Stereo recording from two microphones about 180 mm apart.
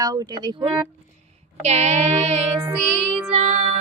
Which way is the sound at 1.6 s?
35° right (ahead or behind).